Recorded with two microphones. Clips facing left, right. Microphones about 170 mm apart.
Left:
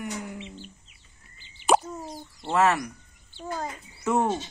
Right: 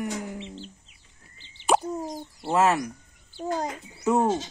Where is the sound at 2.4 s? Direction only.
15° right (ahead or behind).